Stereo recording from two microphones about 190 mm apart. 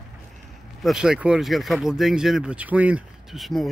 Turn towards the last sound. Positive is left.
turn(degrees=0)  # may be behind; listen again after turning